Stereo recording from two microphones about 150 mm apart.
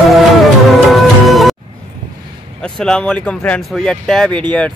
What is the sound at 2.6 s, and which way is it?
Speech, 5° left (ahead or behind).